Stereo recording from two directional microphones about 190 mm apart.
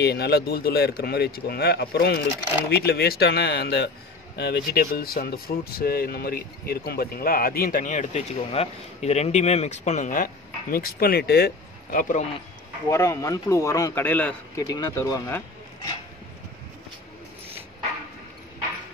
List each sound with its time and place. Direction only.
0.0 s speech: 60° left (ahead or behind); by 12.3 s 45° left (ahead or behind)
12.9 s speech: 15° left (ahead or behind)
14.6 s speech: 20° left (ahead or behind)